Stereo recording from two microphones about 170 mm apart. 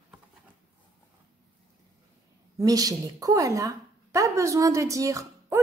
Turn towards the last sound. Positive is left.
turn(degrees=-20)  # may be behind; listen again after turning